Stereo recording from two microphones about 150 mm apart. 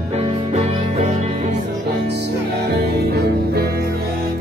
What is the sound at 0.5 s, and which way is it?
Music, 45° right (ahead or behind).